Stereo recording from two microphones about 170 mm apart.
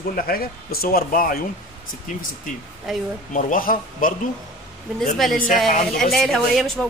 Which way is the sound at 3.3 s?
50° left (ahead or behind).